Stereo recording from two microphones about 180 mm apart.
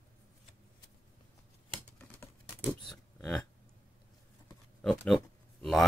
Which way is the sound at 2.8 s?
5° left (ahead or behind).